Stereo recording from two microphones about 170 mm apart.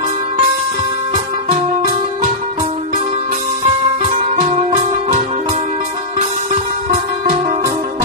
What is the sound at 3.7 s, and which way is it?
Music, 45° right (ahead or behind).